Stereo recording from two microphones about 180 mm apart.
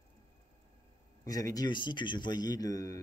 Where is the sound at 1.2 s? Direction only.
20° left (ahead or behind).